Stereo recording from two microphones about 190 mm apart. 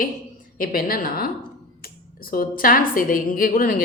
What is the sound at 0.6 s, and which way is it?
Speech, 50° left (ahead or behind).